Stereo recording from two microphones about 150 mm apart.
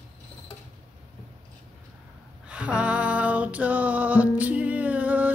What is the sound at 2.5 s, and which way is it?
Music, 5° right (ahead or behind).